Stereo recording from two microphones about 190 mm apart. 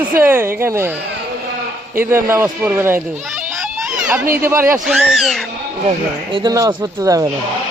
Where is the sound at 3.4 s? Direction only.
Centre (ahead or behind).